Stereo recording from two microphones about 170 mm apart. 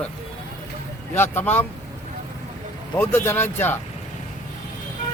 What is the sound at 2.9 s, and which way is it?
Speech, 15° left (ahead or behind).